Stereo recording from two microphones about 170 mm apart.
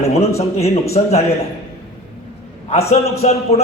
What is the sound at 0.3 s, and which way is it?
Speech, 40° left (ahead or behind).